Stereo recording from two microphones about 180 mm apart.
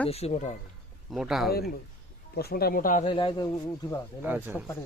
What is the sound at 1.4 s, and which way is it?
Speech, 60° left (ahead or behind).